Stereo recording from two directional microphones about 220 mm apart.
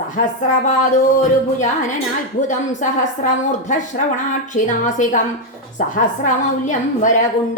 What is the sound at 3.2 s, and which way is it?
A woman's voice, 35° left (ahead or behind).